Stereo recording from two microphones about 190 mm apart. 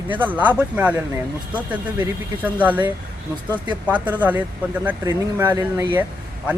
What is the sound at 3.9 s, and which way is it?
Speech, 10° right (ahead or behind).